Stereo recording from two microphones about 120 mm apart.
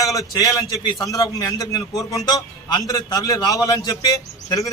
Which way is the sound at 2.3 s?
35° left (ahead or behind).